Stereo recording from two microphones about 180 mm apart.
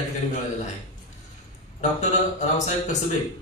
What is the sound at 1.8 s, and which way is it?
Speech, 40° left (ahead or behind).